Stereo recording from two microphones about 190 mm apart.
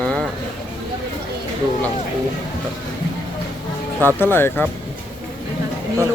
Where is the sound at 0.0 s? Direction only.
5° left (ahead or behind).